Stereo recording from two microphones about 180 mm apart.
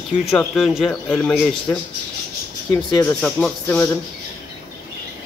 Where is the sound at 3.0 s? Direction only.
5° left (ahead or behind).